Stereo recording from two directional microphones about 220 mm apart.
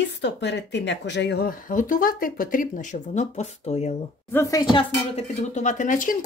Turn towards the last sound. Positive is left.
turn(degrees=35)  # may be behind; listen again after turning